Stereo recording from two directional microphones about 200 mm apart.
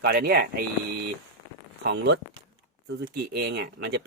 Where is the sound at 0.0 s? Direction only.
50° right (ahead or behind).